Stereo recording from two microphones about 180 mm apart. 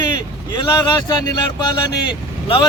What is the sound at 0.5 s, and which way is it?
Speech, 25° left (ahead or behind).